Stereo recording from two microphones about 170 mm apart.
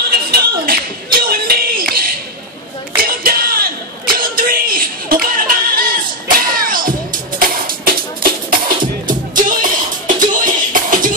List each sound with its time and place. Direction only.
0.1 s a sound: 60° right (ahead or behind)
3.0 s crowd: 60° right (ahead or behind)
7.3 s music: 55° right (ahead or behind)